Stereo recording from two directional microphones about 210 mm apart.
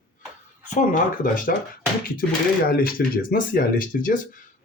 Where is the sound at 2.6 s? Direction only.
45° left (ahead or behind).